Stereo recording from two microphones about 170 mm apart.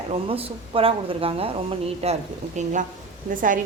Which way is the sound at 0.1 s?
35° right (ahead or behind).